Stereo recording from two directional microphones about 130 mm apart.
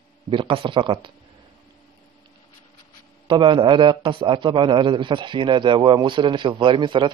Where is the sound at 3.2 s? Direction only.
40° right (ahead or behind).